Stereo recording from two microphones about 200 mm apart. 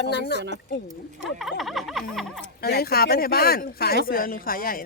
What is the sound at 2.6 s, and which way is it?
Speech, 50° left (ahead or behind).